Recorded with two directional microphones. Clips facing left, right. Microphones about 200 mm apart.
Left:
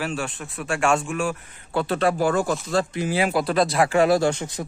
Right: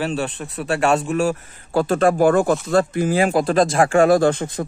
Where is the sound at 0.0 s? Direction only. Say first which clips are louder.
Right 5 dB; 35° right (ahead or behind).